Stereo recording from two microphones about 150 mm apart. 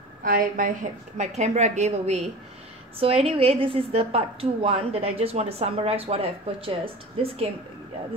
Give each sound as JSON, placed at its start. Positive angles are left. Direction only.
{"t": 0.2, "sound": "a woman's voice", "side_deg": -65}